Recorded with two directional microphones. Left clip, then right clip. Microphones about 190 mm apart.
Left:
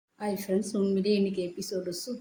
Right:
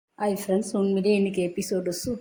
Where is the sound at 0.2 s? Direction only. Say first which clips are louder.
Right 5 dB; 15° right (ahead or behind).